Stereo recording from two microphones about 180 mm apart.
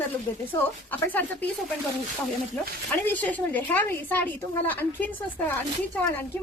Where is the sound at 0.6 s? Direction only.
10° left (ahead or behind).